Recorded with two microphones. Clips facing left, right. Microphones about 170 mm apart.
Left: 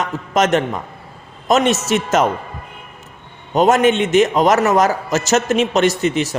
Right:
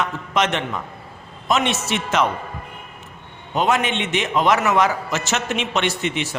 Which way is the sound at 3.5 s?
45° left (ahead or behind).